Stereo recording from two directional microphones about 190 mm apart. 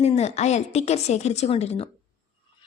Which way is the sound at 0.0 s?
35° left (ahead or behind).